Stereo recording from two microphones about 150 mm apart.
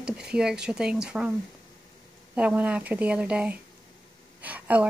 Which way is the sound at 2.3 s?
10° right (ahead or behind).